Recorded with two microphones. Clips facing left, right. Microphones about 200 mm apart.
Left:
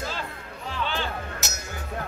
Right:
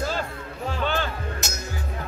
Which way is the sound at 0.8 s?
45° right (ahead or behind).